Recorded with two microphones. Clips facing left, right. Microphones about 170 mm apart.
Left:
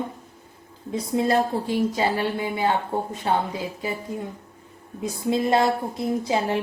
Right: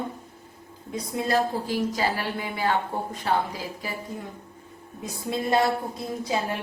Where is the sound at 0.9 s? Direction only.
25° left (ahead or behind).